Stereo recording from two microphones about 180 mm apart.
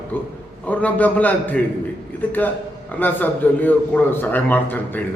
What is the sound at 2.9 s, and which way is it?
A man's voice, 10° left (ahead or behind).